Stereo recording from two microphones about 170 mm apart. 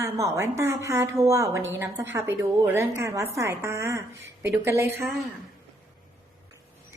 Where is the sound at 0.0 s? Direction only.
20° right (ahead or behind).